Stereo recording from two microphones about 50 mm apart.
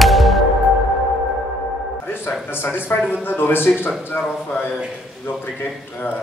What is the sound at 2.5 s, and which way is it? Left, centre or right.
Speech, left.